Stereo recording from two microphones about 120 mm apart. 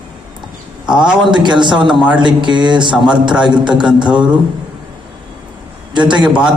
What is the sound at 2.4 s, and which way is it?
Speech, 40° right (ahead or behind).